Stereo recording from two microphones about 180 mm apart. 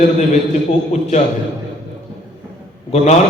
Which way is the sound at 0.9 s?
40° left (ahead or behind).